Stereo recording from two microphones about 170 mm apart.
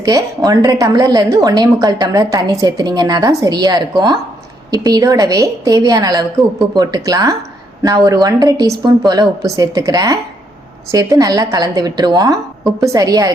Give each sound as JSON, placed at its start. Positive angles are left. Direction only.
{"t": 0.0, "sound": "a woman's voice", "side_deg": -20}